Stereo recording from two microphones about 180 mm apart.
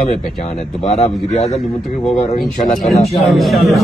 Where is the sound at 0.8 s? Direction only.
40° left (ahead or behind).